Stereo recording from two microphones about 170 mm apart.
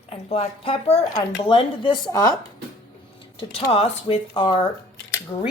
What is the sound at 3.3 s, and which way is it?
Speech, 35° left (ahead or behind).